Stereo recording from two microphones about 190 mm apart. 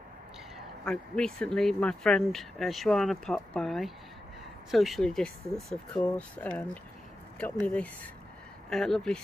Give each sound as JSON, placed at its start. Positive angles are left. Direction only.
{"t": 0.8, "sound": "speech", "side_deg": 5}